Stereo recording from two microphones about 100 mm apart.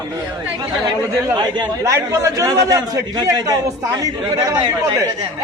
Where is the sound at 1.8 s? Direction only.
35° right (ahead or behind).